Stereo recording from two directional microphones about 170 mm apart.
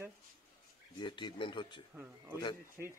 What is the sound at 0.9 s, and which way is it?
Speech, 25° left (ahead or behind).